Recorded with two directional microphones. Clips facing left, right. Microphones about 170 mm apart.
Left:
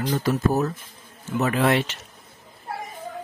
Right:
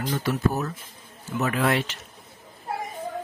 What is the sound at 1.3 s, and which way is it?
Speech, 30° left (ahead or behind).